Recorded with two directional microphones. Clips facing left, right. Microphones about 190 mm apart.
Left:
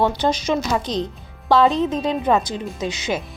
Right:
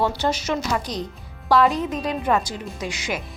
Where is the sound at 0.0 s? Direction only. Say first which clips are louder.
Left 3 dB; 15° left (ahead or behind).